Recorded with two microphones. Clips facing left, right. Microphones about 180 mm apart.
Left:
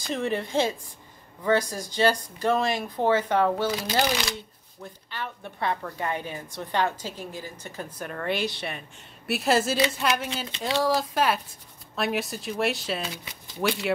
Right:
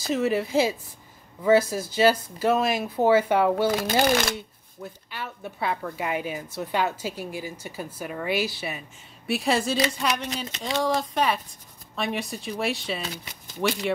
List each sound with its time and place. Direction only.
0.1 s a woman's voice: 5° right (ahead or behind)
3.6 s speech: 50° right (ahead or behind)
4.8 s a woman's voice: 5° right (ahead or behind)